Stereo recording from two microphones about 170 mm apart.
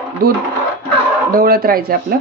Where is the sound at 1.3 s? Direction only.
60° right (ahead or behind).